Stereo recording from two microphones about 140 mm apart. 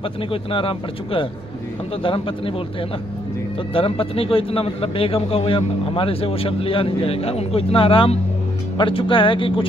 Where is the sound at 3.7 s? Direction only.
40° left (ahead or behind).